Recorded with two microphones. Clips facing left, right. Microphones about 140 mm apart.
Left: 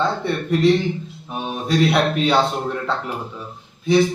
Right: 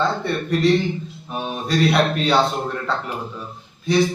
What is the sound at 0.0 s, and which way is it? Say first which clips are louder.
A man's voice: even; 20° left (ahead or behind).